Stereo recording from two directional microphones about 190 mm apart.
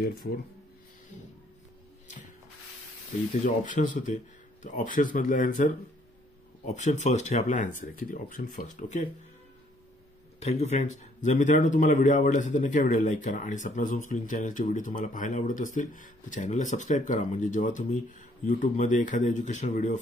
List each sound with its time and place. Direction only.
0.0 s speech: 50° left (ahead or behind)
3.4 s speech: 45° left (ahead or behind)
10.4 s speech: 35° left (ahead or behind)